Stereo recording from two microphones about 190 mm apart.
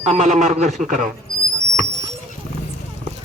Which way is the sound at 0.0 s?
35° right (ahead or behind).